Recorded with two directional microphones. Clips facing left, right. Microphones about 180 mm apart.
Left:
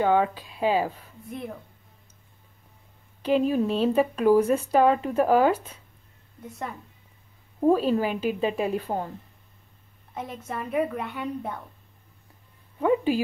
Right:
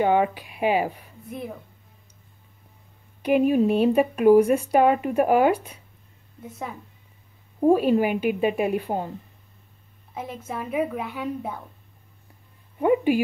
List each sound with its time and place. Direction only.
0.0 s speech: 15° right (ahead or behind)
1.2 s a woman's voice: centre (ahead or behind)
3.2 s speech: 15° right (ahead or behind)
6.4 s a woman's voice: centre (ahead or behind)
7.6 s speech: 15° right (ahead or behind)
10.1 s a woman's voice: centre (ahead or behind)
12.7 s speech: 15° right (ahead or behind)